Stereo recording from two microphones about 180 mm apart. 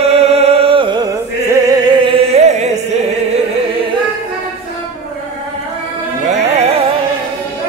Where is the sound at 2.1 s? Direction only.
35° right (ahead or behind).